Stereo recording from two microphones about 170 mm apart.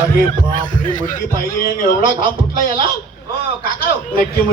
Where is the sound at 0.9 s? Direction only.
45° left (ahead or behind).